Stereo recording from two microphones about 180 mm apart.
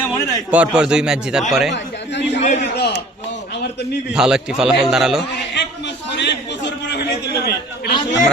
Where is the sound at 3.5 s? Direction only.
70° left (ahead or behind).